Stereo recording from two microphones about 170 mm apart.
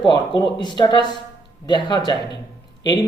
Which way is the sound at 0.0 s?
25° left (ahead or behind).